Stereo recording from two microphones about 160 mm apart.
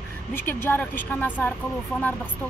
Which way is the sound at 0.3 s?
15° left (ahead or behind).